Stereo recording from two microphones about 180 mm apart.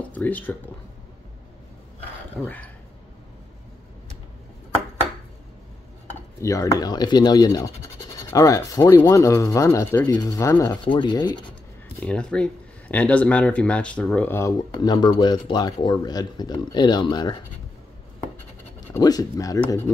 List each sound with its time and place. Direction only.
0.1 s speech: 10° left (ahead or behind)
2.4 s speech: 10° left (ahead or behind)
6.4 s speech: 20° left (ahead or behind)
12.0 s speech: 5° left (ahead or behind); by 17.4 s 25° left (ahead or behind)
18.9 s speech: 20° left (ahead or behind)